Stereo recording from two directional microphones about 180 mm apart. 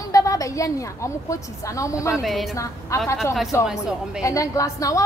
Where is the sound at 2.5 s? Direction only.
15° left (ahead or behind).